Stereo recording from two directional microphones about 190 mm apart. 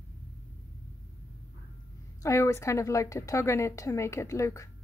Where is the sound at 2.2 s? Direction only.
15° left (ahead or behind).